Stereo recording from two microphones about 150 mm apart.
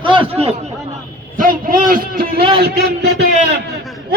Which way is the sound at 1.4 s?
65° right (ahead or behind).